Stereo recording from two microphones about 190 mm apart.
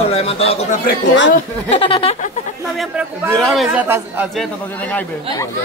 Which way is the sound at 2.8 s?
5° right (ahead or behind).